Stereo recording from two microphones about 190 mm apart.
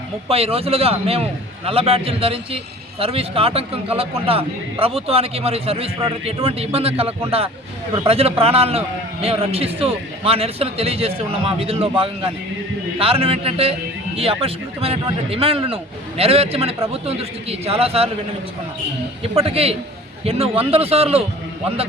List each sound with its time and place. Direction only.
0.3 s a man's voice: 30° right (ahead or behind)
19.2 s a man's voice: 30° right (ahead or behind)